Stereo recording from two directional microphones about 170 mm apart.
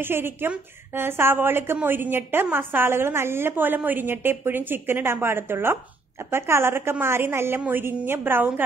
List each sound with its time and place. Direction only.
0.0 s a woman's voice: 15° right (ahead or behind)